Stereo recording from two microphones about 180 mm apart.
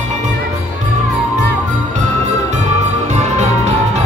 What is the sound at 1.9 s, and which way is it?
Music, 40° right (ahead or behind).